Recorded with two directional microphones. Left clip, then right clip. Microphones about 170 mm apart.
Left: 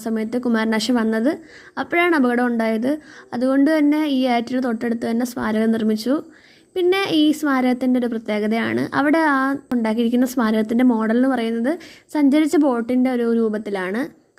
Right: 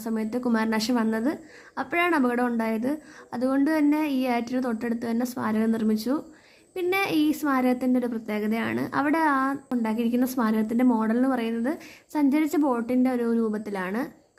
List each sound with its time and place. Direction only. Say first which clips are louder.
0.0 s a woman's voice: left 5 dB; 30° left (ahead or behind)